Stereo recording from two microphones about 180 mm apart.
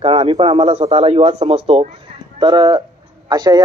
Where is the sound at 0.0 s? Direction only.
30° right (ahead or behind).